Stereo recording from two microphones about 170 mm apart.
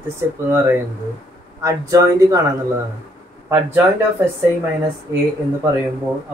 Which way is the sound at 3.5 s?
15° right (ahead or behind).